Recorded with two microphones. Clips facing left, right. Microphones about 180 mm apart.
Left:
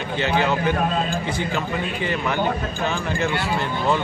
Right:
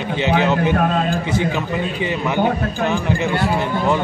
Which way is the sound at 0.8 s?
50° right (ahead or behind).